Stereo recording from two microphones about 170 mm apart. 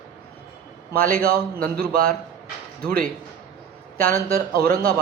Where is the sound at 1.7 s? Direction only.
55° right (ahead or behind).